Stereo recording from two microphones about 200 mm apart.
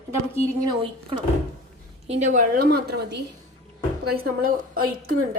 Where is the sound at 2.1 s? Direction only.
40° right (ahead or behind).